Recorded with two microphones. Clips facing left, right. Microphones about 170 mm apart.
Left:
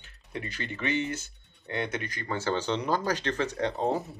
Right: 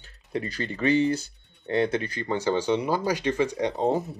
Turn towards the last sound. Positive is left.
turn(degrees=-15)  # may be behind; listen again after turning